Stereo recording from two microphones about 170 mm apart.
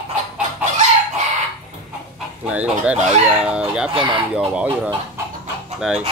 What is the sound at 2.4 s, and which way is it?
Speech, 10° right (ahead or behind).